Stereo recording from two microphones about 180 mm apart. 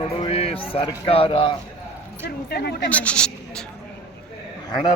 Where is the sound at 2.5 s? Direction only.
65° left (ahead or behind).